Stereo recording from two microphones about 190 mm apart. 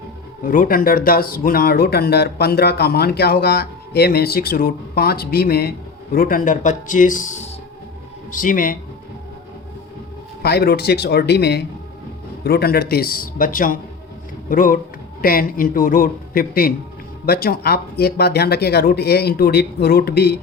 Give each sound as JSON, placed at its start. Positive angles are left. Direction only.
{"t": 0.4, "sound": "speech", "side_deg": 45}
{"t": 10.4, "sound": "speech", "side_deg": 55}